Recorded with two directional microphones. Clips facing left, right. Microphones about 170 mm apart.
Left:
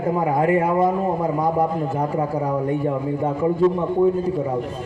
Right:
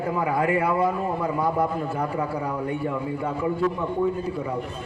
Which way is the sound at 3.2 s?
25° left (ahead or behind).